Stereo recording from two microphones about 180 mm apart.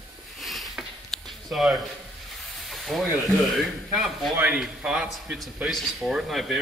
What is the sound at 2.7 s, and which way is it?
Speech, centre (ahead or behind).